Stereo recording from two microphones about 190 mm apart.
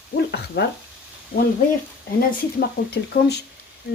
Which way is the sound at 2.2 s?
55° left (ahead or behind).